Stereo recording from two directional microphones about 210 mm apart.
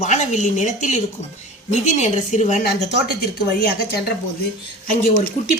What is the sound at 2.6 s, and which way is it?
A woman's voice, 50° left (ahead or behind).